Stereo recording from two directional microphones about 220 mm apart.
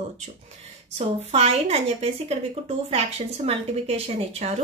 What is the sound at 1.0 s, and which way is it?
Speech, 30° right (ahead or behind).